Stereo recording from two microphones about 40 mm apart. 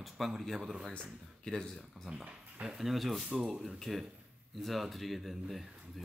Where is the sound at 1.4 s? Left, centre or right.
Centre.